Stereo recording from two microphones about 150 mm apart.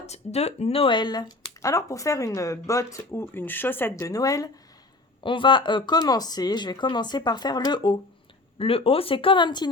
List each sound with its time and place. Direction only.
0.0 s speech: 45° left (ahead or behind); by 4.5 s 25° left (ahead or behind)
5.2 s speech: 35° left (ahead or behind)
8.5 s speech: 40° left (ahead or behind)